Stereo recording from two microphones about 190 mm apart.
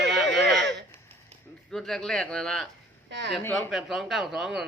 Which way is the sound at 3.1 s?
70° right (ahead or behind).